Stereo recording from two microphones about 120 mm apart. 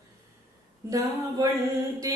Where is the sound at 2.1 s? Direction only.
30° right (ahead or behind).